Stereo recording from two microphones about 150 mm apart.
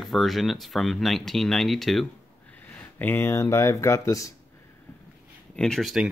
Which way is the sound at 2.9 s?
15° left (ahead or behind).